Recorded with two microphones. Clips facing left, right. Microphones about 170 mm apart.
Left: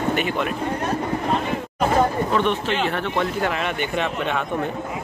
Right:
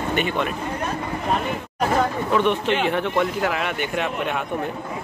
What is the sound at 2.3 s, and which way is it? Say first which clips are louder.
Speech: right 1 dB; 15° right (ahead or behind).